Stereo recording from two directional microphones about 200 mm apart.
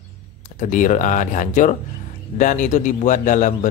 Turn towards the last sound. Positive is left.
turn(degrees=40)  # may be behind; listen again after turning